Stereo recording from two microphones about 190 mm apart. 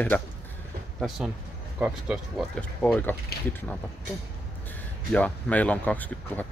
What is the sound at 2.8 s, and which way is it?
Speech, 5° left (ahead or behind).